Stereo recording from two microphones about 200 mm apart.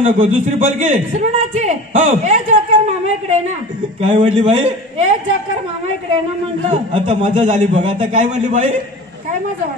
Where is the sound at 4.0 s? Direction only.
30° right (ahead or behind).